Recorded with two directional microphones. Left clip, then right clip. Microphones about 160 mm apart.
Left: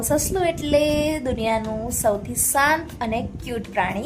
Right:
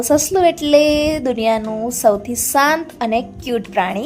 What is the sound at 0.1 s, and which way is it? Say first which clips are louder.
A woman's voice: right 8 dB; 35° right (ahead or behind).